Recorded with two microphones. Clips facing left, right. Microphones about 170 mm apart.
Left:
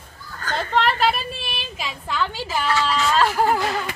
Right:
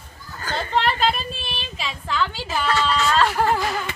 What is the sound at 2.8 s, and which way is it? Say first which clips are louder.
Speech: even; 5° left (ahead or behind).